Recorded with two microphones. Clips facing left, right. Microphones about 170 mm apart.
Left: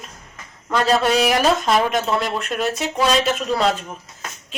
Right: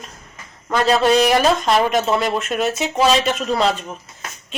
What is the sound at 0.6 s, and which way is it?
Speech, centre (ahead or behind).